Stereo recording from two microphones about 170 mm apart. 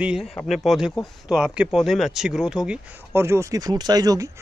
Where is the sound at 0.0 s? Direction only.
Centre (ahead or behind).